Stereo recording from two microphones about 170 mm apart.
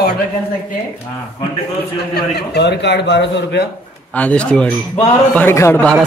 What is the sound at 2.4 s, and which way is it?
A man's voice, 80° left.